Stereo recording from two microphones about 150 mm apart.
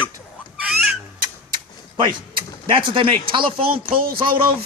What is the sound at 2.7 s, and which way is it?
Speech, 35° right (ahead or behind).